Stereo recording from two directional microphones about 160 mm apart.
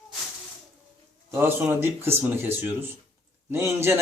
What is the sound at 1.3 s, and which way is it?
Speech, 15° right (ahead or behind).